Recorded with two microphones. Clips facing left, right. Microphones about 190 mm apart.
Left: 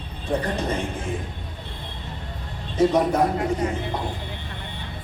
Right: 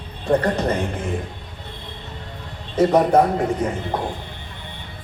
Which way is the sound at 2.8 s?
60° right (ahead or behind).